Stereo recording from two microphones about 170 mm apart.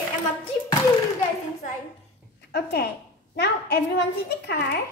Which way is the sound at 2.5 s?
70° left (ahead or behind).